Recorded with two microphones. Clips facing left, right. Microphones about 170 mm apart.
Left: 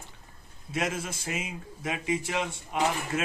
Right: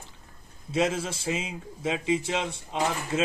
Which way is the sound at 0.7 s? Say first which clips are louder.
Right 5 dB; 30° right (ahead or behind).